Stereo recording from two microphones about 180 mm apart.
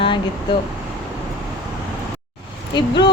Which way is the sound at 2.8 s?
25° left (ahead or behind).